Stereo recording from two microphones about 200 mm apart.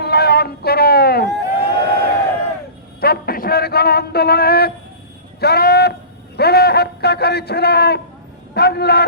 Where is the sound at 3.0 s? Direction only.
50° left (ahead or behind).